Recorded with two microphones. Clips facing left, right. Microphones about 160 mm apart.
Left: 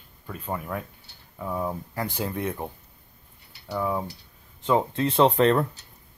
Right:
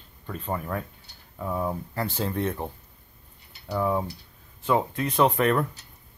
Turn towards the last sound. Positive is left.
turn(degrees=25)  # may be behind; listen again after turning